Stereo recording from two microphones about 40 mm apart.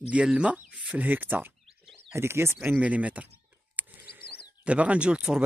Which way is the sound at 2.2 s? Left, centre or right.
Right.